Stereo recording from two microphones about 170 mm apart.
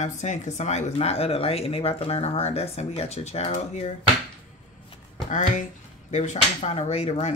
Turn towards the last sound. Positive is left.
turn(degrees=35)  # may be behind; listen again after turning